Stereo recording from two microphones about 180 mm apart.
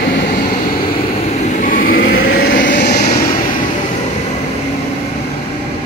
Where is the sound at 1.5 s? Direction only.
45° left (ahead or behind).